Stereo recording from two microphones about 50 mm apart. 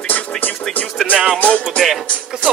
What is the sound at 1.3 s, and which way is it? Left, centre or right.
Speech, left.